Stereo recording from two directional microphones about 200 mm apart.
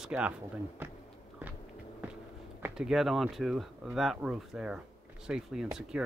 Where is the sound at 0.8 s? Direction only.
10° right (ahead or behind).